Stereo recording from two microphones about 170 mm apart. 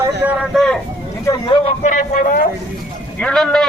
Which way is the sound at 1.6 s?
45° left (ahead or behind).